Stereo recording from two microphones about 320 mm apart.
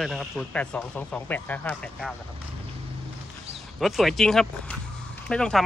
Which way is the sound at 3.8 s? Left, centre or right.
Centre.